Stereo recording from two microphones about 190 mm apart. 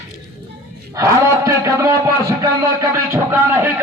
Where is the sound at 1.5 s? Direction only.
15° right (ahead or behind).